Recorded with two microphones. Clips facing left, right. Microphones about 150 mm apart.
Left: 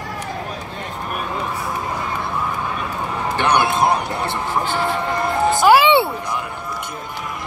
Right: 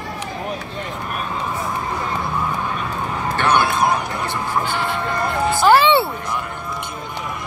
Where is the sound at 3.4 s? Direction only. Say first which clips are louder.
Even; 15° left (ahead or behind).